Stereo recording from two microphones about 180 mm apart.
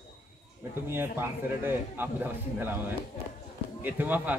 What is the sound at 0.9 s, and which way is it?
A man's voice, 10° right (ahead or behind).